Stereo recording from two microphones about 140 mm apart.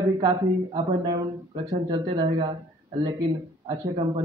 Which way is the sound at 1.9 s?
30° right (ahead or behind).